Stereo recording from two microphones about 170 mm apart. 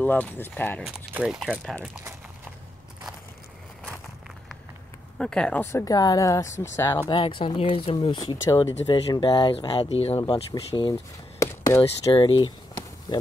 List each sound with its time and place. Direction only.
0.0 s speech: 10° left (ahead or behind)
1.1 s speech: 5° right (ahead or behind)
5.2 s speech: 5° left (ahead or behind)
7.1 s speech: 30° left (ahead or behind)
10.2 s speech: 25° left (ahead or behind)
10.9 s a sound: 20° left (ahead or behind)
11.8 s speech: 30° left (ahead or behind)